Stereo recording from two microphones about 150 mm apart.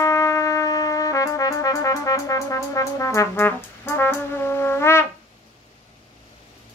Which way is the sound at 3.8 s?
15° left (ahead or behind).